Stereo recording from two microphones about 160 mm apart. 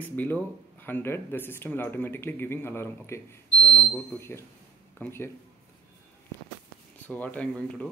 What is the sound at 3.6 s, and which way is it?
Speech, 5° left (ahead or behind).